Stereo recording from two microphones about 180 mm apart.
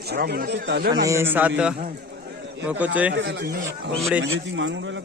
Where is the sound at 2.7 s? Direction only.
10° right (ahead or behind).